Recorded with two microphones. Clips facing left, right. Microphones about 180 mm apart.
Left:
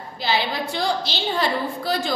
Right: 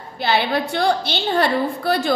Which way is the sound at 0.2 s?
60° right (ahead or behind).